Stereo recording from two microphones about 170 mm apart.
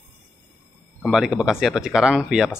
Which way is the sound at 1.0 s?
Centre (ahead or behind).